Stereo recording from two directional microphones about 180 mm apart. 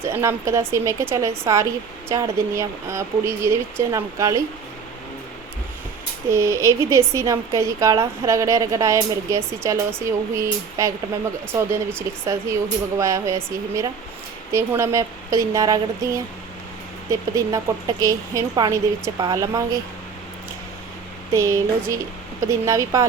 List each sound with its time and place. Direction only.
0.0 s a woman's voice: 15° right (ahead or behind)
6.3 s a woman's voice: 15° right (ahead or behind)
21.3 s a woman's voice: 15° right (ahead or behind)